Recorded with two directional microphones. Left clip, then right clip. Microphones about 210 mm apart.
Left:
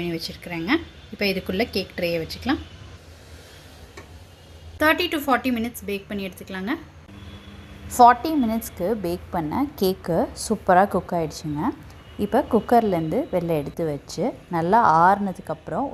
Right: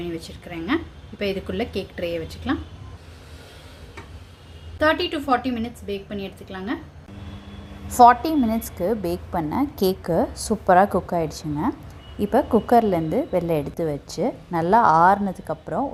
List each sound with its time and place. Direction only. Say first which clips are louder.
0.4 s a woman's voice: left 1 dB; 20° left (ahead or behind)
4.8 s a woman's voice: even; 30° left (ahead or behind)
7.9 s a woman's voice: right 1 dB; centre (ahead or behind)